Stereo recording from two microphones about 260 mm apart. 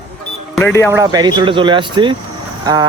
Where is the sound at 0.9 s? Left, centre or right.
Centre.